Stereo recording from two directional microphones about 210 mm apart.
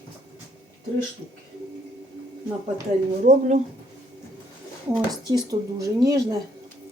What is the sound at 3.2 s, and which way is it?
Speech, 35° right (ahead or behind).